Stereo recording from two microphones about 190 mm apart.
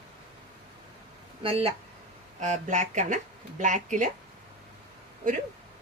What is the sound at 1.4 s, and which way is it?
Speech, 25° right (ahead or behind).